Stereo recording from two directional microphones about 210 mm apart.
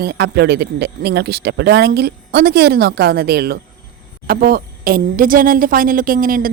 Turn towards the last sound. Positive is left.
turn(degrees=-40)  # may be behind; listen again after turning